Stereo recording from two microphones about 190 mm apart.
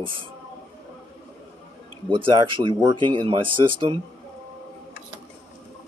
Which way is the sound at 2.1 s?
25° right (ahead or behind).